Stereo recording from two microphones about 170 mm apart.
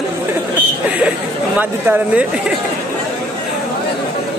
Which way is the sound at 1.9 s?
10° right (ahead or behind).